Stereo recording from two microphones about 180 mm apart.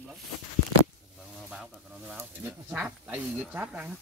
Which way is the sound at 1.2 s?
Centre (ahead or behind).